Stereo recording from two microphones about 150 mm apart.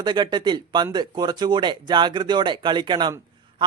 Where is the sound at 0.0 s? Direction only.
30° right (ahead or behind).